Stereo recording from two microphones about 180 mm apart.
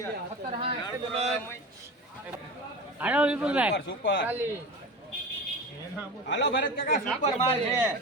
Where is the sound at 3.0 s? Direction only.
5° right (ahead or behind).